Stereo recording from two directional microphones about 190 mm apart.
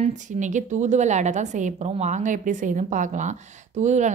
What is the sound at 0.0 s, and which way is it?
A woman's voice, 40° right (ahead or behind).